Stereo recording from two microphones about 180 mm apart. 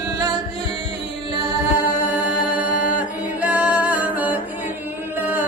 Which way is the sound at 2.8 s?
10° right (ahead or behind).